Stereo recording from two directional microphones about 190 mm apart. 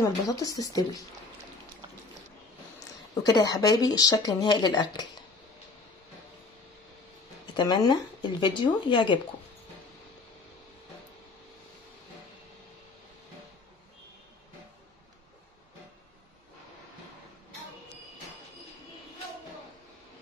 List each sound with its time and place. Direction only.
0.0 s speech: 20° left (ahead or behind)
3.3 s speech: 20° left (ahead or behind)
7.5 s speech: 20° left (ahead or behind)